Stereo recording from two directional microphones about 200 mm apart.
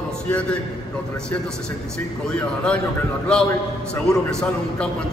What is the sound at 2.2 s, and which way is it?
A man's voice, 5° left (ahead or behind).